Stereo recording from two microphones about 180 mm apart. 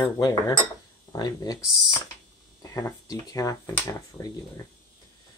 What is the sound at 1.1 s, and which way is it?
Speech, 20° left (ahead or behind).